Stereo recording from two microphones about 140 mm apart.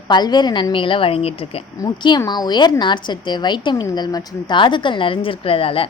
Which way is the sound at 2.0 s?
30° left (ahead or behind).